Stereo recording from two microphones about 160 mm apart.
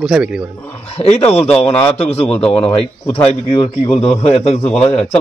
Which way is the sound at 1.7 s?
15° left (ahead or behind).